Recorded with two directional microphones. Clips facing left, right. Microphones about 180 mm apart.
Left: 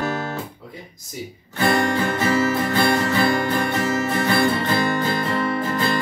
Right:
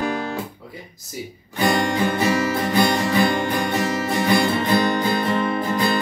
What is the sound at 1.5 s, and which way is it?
Music, 15° right (ahead or behind).